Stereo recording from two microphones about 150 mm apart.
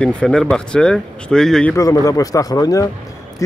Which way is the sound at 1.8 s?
20° left (ahead or behind).